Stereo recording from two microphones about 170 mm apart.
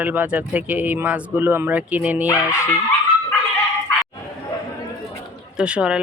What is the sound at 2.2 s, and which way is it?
Speech, 15° left (ahead or behind).